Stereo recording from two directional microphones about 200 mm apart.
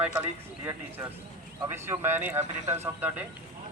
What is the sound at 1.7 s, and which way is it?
A man's voice, 10° right (ahead or behind).